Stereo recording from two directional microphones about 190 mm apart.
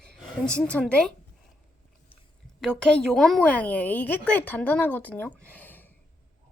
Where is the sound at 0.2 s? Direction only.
5° left (ahead or behind).